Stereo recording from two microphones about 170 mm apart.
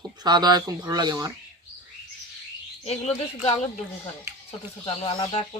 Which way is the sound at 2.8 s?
40° left (ahead or behind).